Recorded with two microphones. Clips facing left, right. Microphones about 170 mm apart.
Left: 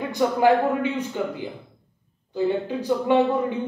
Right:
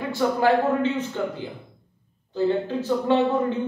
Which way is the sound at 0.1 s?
15° left (ahead or behind).